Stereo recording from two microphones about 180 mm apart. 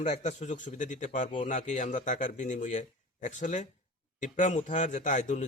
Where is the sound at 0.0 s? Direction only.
40° left (ahead or behind).